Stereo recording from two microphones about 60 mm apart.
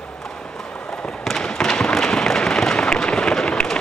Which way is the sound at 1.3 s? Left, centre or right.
Centre.